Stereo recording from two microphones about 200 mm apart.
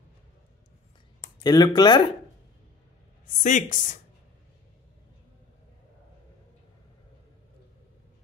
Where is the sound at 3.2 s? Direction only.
40° left (ahead or behind).